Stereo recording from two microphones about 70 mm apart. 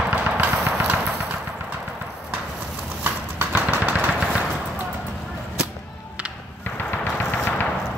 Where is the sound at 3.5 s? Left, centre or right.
Centre.